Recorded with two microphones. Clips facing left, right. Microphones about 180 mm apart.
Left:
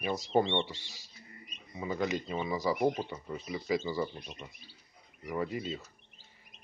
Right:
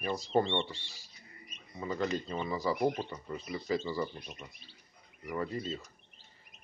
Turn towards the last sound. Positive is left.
turn(degrees=10)  # may be behind; listen again after turning